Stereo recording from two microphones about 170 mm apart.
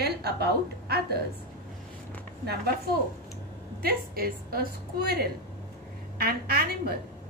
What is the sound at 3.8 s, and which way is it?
Speech, 65° right (ahead or behind).